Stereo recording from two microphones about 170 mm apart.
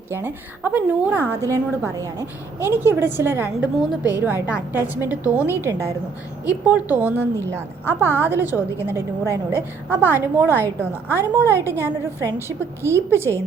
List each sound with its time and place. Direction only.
0.1 s a woman's voice: 15° right (ahead or behind)